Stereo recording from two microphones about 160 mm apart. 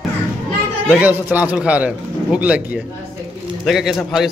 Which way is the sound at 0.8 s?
10° right (ahead or behind).